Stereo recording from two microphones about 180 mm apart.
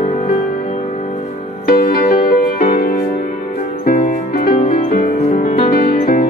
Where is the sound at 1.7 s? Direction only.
50° left (ahead or behind).